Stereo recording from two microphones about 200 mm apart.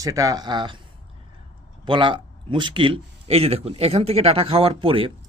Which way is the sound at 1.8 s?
25° right (ahead or behind).